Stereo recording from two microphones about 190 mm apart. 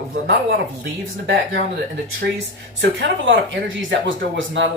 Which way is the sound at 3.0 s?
75° right (ahead or behind).